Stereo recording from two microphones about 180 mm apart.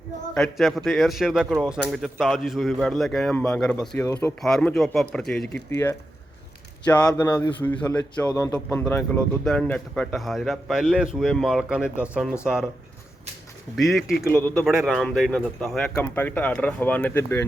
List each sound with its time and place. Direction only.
0.3 s speech: centre (ahead or behind)
5.7 s speech: 15° left (ahead or behind); by 12.6 s 5° right (ahead or behind)
13.7 s speech: centre (ahead or behind)
14.3 s speech: 10° left (ahead or behind)
14.6 s speech: 5° right (ahead or behind); by 17.4 s 10° left (ahead or behind)